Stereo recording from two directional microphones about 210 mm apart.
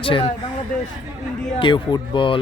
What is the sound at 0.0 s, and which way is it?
Speech, 25° left (ahead or behind).